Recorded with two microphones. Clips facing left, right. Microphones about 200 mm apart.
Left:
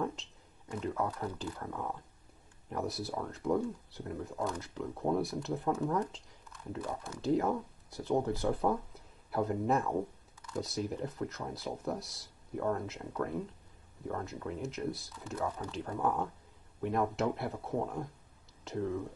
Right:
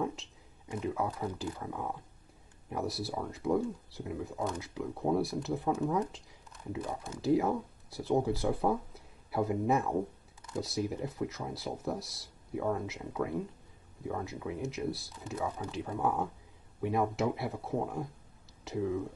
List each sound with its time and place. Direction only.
0.7 s speech: 10° right (ahead or behind)
7.2 s speech: 5° right (ahead or behind)